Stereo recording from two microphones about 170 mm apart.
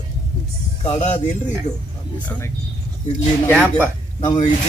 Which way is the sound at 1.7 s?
25° left (ahead or behind).